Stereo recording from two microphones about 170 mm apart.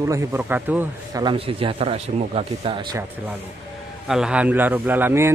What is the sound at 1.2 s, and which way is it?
Speech, 35° right (ahead or behind).